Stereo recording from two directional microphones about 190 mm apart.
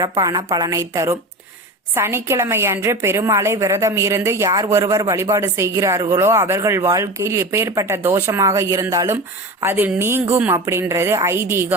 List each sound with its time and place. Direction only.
0.0 s a woman's voice: 20° right (ahead or behind)